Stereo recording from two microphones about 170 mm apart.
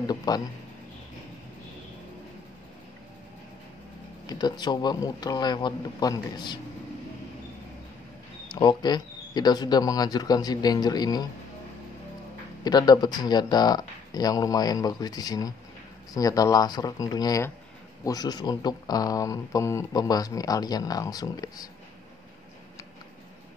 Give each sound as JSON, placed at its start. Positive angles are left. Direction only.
{"t": 0.0, "sound": "speech", "side_deg": 25}
{"t": 4.3, "sound": "speech", "side_deg": 25}
{"t": 8.5, "sound": "speech", "side_deg": 25}
{"t": 12.6, "sound": "speech", "side_deg": 25}